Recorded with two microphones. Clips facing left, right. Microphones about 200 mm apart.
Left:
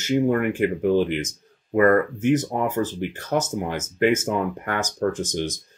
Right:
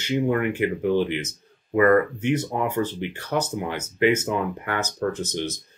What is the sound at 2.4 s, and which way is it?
Speech, 45° left (ahead or behind).